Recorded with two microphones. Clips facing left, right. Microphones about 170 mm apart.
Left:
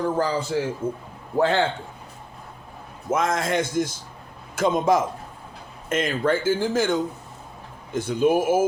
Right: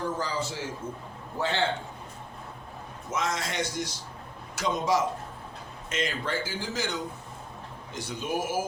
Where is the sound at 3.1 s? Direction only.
50° left (ahead or behind).